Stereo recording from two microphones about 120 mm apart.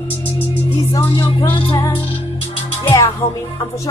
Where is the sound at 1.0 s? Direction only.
40° left (ahead or behind).